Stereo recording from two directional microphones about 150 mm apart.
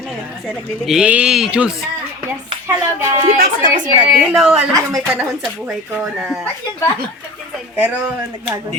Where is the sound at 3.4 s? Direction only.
60° right (ahead or behind).